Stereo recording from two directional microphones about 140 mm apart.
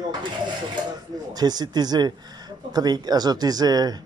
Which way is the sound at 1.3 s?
30° right (ahead or behind).